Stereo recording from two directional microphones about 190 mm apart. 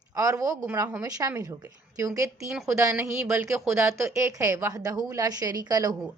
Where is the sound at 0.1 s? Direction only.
15° right (ahead or behind).